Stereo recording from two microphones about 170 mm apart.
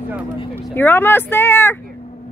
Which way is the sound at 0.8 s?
10° left (ahead or behind).